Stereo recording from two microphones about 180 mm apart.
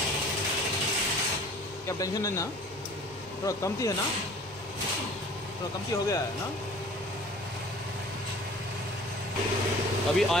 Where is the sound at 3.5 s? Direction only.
20° left (ahead or behind).